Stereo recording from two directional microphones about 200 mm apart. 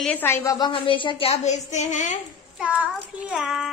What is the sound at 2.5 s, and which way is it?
A woman's voice, 5° right (ahead or behind).